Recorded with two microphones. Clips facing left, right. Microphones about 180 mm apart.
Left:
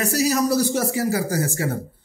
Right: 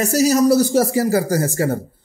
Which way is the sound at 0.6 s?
35° right (ahead or behind).